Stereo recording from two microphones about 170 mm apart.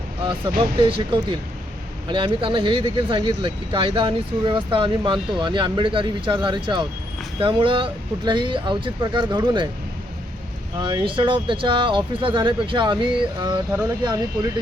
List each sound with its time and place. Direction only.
0.3 s speech: 30° right (ahead or behind)
10.8 s speech: 30° right (ahead or behind)